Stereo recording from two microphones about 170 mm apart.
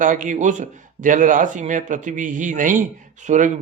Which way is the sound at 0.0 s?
50° right (ahead or behind).